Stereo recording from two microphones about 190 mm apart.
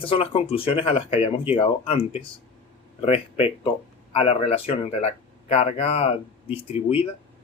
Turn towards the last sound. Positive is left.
turn(degrees=30)  # may be behind; listen again after turning